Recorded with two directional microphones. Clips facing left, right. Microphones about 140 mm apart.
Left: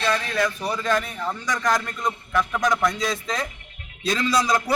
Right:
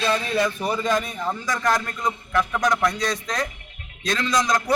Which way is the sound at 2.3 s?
Centre (ahead or behind).